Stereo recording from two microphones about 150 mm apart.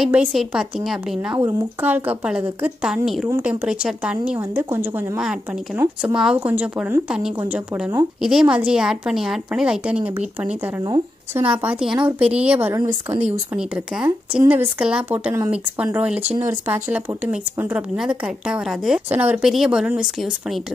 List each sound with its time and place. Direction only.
0.0 s a woman's voice: 5° right (ahead or behind)
1.3 s speech: 15° right (ahead or behind)
3.3 s a woman's voice: 15° right (ahead or behind)
13.6 s speech: 5° right (ahead or behind)